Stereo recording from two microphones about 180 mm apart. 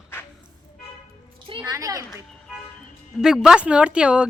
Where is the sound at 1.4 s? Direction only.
25° right (ahead or behind).